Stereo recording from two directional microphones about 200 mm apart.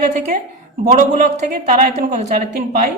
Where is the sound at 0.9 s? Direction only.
40° right (ahead or behind).